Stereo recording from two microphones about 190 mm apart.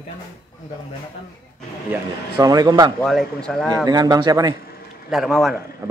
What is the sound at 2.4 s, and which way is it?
Speech, 20° right (ahead or behind).